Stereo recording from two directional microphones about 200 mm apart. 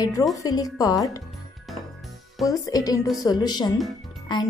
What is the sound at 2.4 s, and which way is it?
Speech, 20° left (ahead or behind).